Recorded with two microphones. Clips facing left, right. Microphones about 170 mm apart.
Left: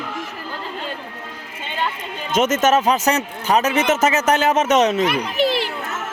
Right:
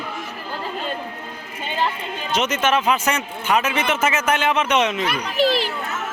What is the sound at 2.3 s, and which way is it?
Speech, 45° left (ahead or behind).